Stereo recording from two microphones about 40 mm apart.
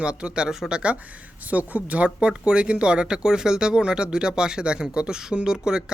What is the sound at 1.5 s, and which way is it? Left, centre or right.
Speech, right.